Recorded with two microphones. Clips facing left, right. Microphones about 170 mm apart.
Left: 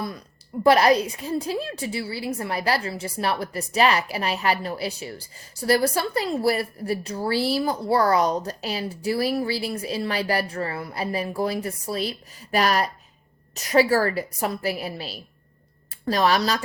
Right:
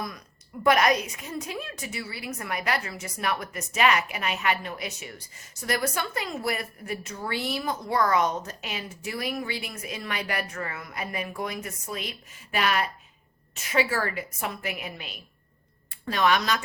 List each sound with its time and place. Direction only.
0.6 s a woman's voice: 30° left (ahead or behind)